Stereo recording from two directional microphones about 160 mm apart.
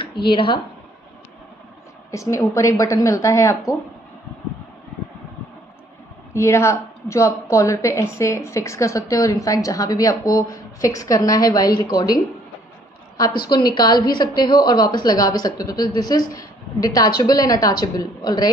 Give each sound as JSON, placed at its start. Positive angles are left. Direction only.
{"t": 0.3, "sound": "speech", "side_deg": 30}
{"t": 2.0, "sound": "a woman's voice", "side_deg": 20}
{"t": 6.3, "sound": "a woman's voice", "side_deg": 15}
{"t": 13.2, "sound": "a woman's voice", "side_deg": 25}